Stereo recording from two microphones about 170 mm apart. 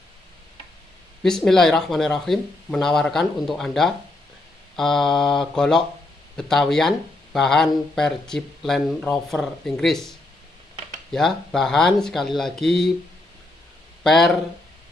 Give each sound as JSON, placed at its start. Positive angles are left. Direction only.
{"t": 1.2, "sound": "speech", "side_deg": 5}
{"t": 14.0, "sound": "speech", "side_deg": 0}